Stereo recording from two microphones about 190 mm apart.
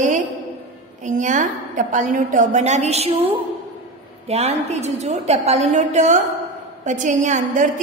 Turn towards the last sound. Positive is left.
turn(degrees=-40)  # may be behind; listen again after turning